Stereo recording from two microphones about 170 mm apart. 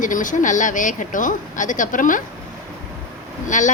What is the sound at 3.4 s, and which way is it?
Speech, 45° left (ahead or behind).